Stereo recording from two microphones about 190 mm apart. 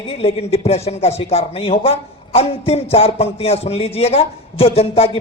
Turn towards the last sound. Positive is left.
turn(degrees=30)  # may be behind; listen again after turning